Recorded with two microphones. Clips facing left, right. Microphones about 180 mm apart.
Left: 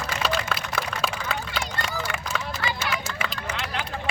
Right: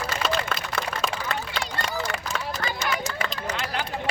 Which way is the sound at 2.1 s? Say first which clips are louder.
Right 1 dB; 35° right (ahead or behind).